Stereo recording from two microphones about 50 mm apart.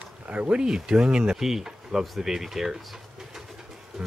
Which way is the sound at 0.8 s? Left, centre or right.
Centre.